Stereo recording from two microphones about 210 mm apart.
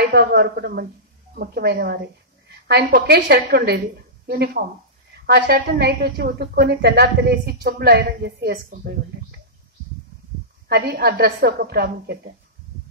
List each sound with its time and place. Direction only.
0.0 s a woman's voice: 50° right (ahead or behind)
10.7 s a woman's voice: 50° right (ahead or behind)